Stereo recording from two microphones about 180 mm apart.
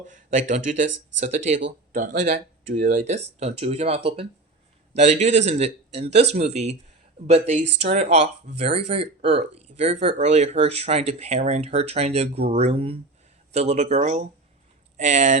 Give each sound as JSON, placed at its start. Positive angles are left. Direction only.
{"t": 0.0, "sound": "speech", "side_deg": -45}
{"t": 2.8, "sound": "speech", "side_deg": -45}